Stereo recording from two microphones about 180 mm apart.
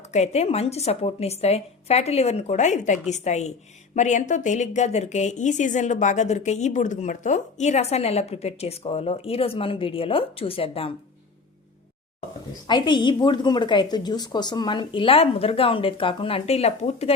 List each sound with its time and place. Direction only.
0.1 s a woman's voice: 35° left (ahead or behind)
12.6 s a woman's voice: 25° left (ahead or behind)